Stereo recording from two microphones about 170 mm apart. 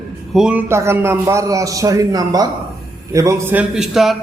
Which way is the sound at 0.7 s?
15° right (ahead or behind).